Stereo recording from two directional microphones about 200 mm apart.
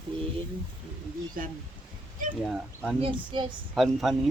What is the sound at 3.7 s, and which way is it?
Speech, centre (ahead or behind).